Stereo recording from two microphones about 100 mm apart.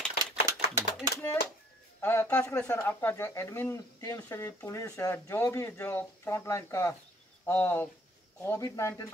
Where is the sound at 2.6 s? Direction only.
15° left (ahead or behind).